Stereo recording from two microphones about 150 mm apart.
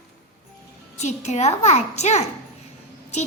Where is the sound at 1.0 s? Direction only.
50° left (ahead or behind).